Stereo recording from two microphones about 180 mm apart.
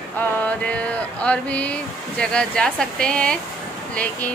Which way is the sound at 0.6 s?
5° left (ahead or behind).